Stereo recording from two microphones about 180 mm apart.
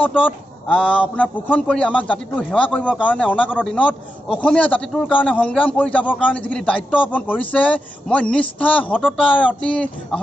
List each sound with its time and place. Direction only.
0.0 s a man's voice: 10° left (ahead or behind)
3.4 s speech: 5° right (ahead or behind)
3.7 s a man's voice: 5° left (ahead or behind)